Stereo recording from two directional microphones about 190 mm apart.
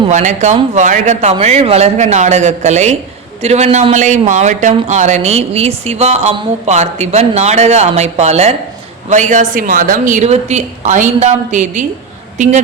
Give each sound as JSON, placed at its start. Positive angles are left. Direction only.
{"t": 0.1, "sound": "speech", "side_deg": -40}